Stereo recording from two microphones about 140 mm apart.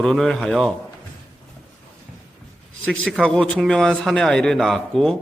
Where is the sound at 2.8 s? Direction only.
5° left (ahead or behind).